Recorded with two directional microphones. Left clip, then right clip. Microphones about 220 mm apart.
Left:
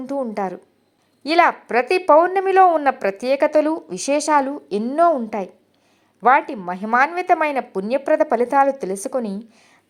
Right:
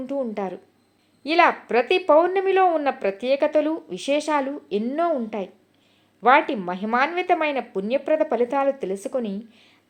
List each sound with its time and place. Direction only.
0.1 s a woman's voice: 20° left (ahead or behind)
6.8 s a woman's voice: 25° left (ahead or behind)